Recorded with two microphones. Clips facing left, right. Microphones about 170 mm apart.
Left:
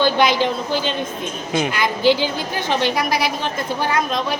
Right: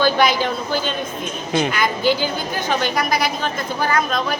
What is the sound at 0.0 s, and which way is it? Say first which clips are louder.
Speech: left 1 dB; 20° left (ahead or behind).